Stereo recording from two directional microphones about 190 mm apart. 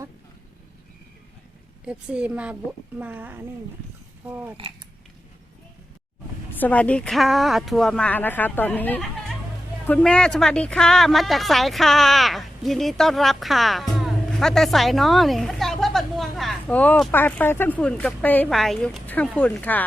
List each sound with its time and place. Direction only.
1.8 s a woman's voice: 5° right (ahead or behind)
6.6 s a woman's voice: 10° left (ahead or behind)